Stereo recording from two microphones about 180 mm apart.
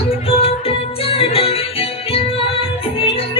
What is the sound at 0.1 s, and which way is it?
Music, 35° left (ahead or behind).